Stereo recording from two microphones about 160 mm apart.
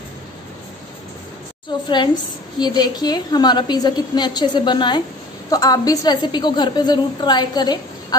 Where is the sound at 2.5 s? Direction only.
25° left (ahead or behind).